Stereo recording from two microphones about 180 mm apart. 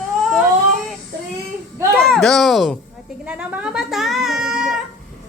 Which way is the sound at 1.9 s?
Centre (ahead or behind).